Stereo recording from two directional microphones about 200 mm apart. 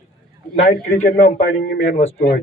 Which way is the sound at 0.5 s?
30° left (ahead or behind).